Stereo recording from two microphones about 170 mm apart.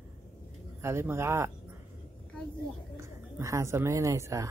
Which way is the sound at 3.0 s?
15° right (ahead or behind).